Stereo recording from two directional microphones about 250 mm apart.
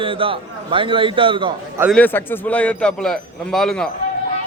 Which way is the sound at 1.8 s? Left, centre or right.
Centre.